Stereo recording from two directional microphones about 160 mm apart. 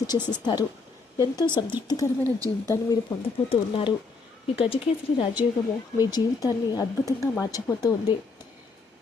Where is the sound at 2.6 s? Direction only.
20° left (ahead or behind).